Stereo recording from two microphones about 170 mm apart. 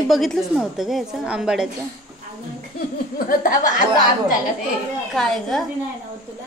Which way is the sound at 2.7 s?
55° left (ahead or behind).